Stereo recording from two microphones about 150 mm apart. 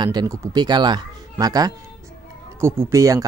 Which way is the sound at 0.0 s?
25° right (ahead or behind).